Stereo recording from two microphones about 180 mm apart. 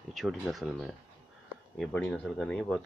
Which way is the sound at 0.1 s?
Centre (ahead or behind).